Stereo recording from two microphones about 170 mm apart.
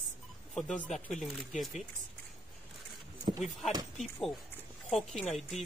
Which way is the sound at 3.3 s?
35° right (ahead or behind).